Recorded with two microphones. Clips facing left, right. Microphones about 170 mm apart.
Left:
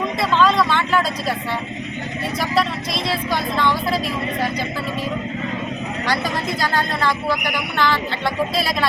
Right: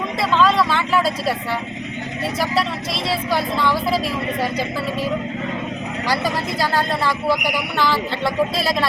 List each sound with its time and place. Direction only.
0.2 s vehicle: centre (ahead or behind)
2.4 s vehicle: 5° right (ahead or behind)
6.6 s speech: 5° right (ahead or behind)